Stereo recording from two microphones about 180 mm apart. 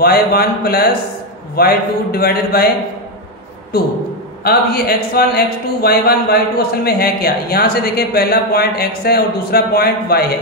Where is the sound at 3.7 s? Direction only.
60° left (ahead or behind).